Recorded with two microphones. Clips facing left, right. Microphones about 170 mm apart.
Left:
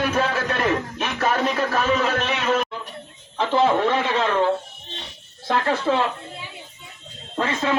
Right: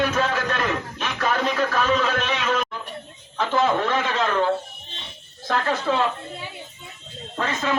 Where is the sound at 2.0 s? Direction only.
30° left (ahead or behind).